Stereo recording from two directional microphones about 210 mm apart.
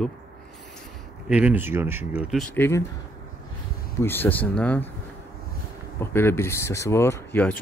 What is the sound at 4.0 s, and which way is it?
Speech, 10° left (ahead or behind).